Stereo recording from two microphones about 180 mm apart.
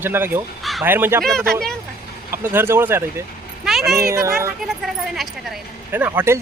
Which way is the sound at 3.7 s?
Centre (ahead or behind).